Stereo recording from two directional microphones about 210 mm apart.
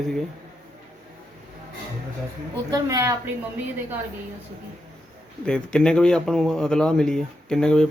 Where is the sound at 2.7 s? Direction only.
15° right (ahead or behind).